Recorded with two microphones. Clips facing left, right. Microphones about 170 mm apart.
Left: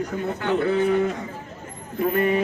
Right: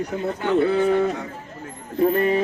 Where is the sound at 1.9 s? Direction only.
35° right (ahead or behind).